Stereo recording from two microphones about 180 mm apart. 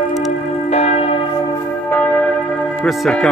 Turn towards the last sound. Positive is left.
turn(degrees=0)  # may be behind; listen again after turning